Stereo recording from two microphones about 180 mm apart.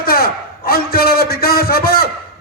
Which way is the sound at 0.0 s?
55° left (ahead or behind).